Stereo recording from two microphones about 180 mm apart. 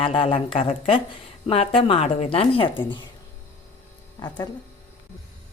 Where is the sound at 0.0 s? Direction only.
30° left (ahead or behind).